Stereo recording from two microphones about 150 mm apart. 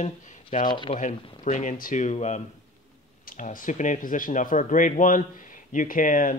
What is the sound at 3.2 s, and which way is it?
Speech, 65° left (ahead or behind).